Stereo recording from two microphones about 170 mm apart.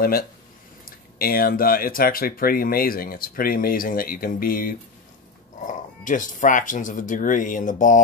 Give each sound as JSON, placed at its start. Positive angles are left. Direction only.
{"t": 0.8, "sound": "speech", "side_deg": 60}